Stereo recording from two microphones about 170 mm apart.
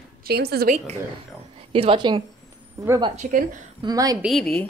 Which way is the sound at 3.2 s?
50° right (ahead or behind).